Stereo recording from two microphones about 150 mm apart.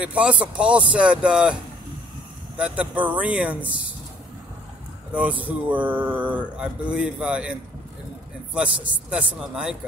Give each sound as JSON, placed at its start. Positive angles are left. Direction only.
{"t": 0.0, "sound": "speech", "side_deg": -10}
{"t": 2.6, "sound": "speech", "side_deg": -10}
{"t": 5.1, "sound": "speech", "side_deg": -10}
{"t": 8.6, "sound": "speech", "side_deg": -35}
{"t": 9.3, "sound": "speech", "side_deg": -5}